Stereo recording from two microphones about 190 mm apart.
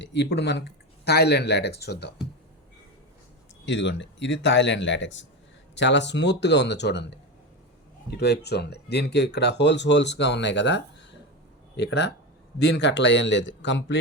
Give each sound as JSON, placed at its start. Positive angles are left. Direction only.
{"t": 0.0, "sound": "speech", "side_deg": 65}
{"t": 3.7, "sound": "speech", "side_deg": 70}